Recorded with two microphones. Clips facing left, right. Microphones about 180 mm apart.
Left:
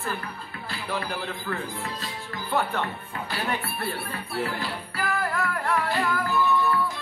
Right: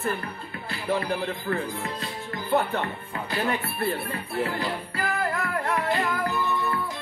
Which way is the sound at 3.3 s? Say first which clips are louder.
Right 3 dB; 20° right (ahead or behind).